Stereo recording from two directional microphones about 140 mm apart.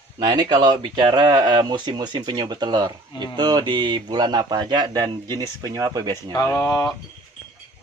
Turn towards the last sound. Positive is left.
turn(degrees=25)  # may be behind; listen again after turning